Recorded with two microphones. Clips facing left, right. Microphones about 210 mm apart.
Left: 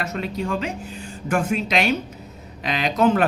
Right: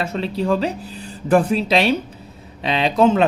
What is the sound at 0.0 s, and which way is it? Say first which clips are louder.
A man's voice: right 4 dB; 30° right (ahead or behind).